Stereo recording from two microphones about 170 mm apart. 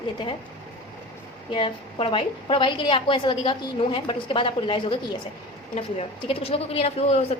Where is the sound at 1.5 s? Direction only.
30° left (ahead or behind).